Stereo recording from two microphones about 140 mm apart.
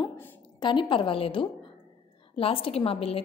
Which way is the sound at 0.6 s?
35° left (ahead or behind).